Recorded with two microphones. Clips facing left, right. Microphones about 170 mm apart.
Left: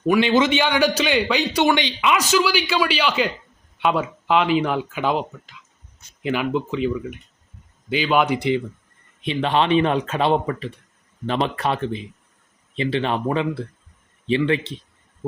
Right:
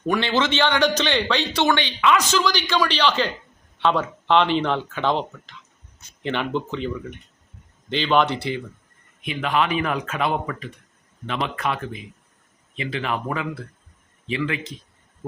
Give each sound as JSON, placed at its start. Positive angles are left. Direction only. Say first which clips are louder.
{"t": 0.1, "sound": "a man's voice", "louder": "left 5 dB", "side_deg": 10}
{"t": 8.4, "sound": "speech", "louder": "left 7 dB", "side_deg": 20}
{"t": 9.2, "sound": "speech", "louder": "left 3 dB", "side_deg": 30}